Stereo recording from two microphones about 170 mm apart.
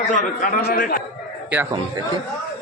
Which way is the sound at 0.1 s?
50° left (ahead or behind).